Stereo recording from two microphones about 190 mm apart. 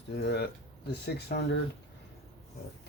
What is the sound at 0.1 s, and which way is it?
Speech, 60° left (ahead or behind).